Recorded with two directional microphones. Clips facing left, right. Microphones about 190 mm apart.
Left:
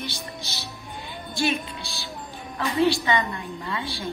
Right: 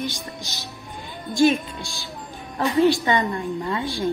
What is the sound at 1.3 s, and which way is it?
Speech, 45° right (ahead or behind).